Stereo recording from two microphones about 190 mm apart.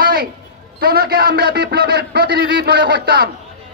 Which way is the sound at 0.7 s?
50° right (ahead or behind).